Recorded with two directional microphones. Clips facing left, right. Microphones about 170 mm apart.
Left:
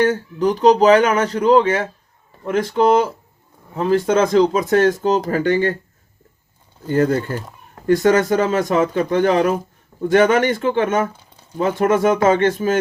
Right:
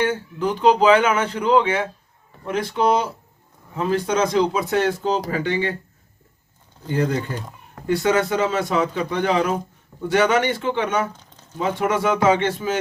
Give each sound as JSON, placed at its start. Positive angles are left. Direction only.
{"t": 0.0, "sound": "speech", "side_deg": 40}
{"t": 6.8, "sound": "speech", "side_deg": 45}
{"t": 11.1, "sound": "a sound", "side_deg": 10}
{"t": 11.5, "sound": "speech", "side_deg": 45}